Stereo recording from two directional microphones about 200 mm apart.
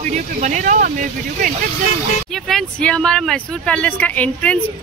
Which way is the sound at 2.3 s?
Centre (ahead or behind).